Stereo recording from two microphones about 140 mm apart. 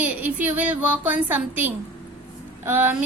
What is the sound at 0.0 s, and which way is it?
A woman's voice, 10° right (ahead or behind).